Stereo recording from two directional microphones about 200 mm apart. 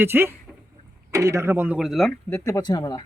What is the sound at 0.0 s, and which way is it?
Speech, 10° right (ahead or behind).